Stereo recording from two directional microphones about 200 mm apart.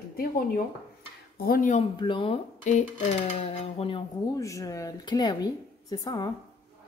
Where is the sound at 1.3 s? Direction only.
50° left (ahead or behind).